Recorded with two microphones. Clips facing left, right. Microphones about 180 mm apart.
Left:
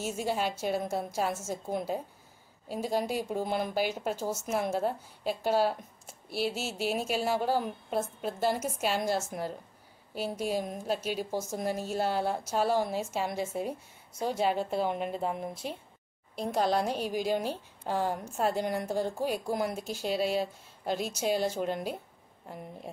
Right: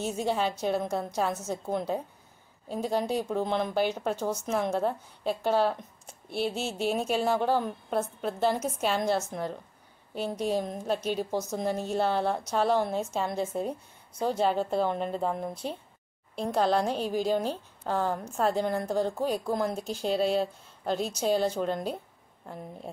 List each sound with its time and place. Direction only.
0.0 s a woman's voice: 5° left (ahead or behind)
14.5 s a woman's voice: 45° right (ahead or behind)
14.8 s speech: 10° left (ahead or behind)
16.3 s speech: 5° left (ahead or behind)